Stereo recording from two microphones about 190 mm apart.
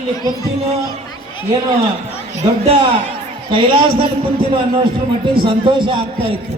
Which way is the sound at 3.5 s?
25° right (ahead or behind).